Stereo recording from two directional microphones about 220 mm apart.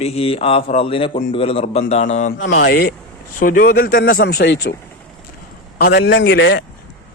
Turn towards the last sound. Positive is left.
turn(degrees=45)  # may be behind; listen again after turning